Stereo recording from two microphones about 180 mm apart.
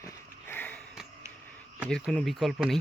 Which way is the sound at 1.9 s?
5° left (ahead or behind).